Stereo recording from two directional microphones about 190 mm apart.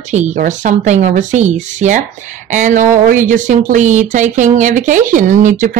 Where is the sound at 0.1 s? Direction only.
40° right (ahead or behind).